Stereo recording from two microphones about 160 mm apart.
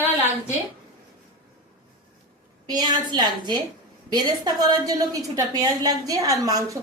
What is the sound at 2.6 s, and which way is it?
A woman's voice, 25° right (ahead or behind).